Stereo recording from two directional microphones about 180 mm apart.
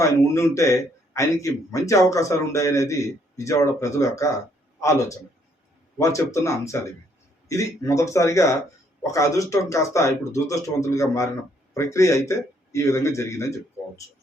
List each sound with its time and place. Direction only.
0.0 s a man's voice: 15° left (ahead or behind)